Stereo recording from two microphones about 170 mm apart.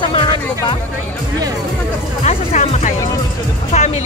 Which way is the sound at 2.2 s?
40° left (ahead or behind).